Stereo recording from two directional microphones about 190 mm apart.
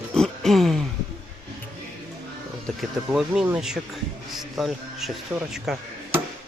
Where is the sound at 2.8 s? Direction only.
5° right (ahead or behind).